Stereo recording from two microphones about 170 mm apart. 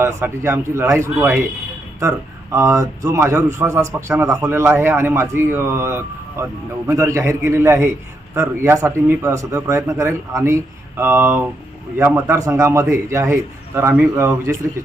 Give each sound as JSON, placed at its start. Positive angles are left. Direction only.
{"t": 0.0, "sound": "speech", "side_deg": -15}